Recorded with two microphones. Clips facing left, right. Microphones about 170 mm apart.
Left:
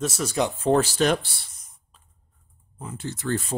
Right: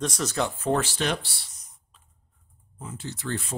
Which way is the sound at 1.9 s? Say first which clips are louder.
Left 3 dB; 40° left (ahead or behind).